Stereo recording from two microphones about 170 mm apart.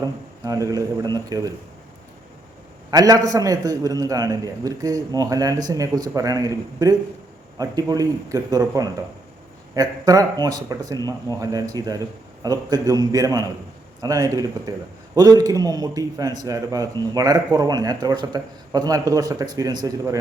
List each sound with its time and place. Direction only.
0.0 s a man's voice: 20° right (ahead or behind)
2.9 s a man's voice: 20° right (ahead or behind)